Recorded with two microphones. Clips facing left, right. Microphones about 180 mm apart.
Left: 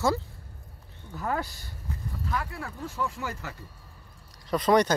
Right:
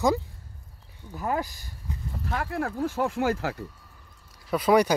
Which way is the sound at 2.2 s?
50° right (ahead or behind).